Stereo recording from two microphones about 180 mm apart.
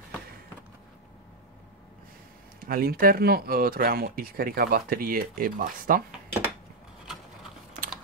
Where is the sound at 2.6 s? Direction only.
55° right (ahead or behind).